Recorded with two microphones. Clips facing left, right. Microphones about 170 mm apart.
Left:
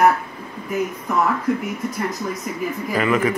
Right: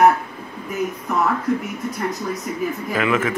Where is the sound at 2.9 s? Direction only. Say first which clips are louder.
Left 2 dB; centre (ahead or behind).